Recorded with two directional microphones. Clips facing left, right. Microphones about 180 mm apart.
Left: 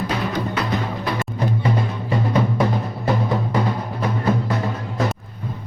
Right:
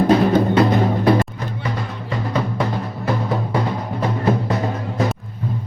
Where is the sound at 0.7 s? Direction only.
45° right (ahead or behind).